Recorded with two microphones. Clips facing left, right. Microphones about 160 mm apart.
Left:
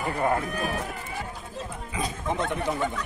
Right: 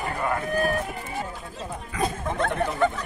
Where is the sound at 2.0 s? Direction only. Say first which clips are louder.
Right 2 dB; 50° right (ahead or behind).